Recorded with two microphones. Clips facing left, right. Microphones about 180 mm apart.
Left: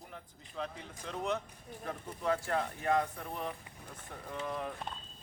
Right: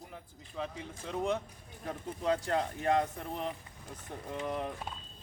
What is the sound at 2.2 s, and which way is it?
Speech, 20° right (ahead or behind).